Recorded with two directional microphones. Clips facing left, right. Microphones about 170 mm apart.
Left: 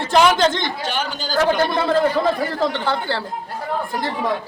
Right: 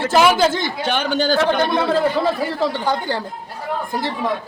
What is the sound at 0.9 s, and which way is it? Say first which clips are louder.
Speech: right 7 dB; 60° right (ahead or behind).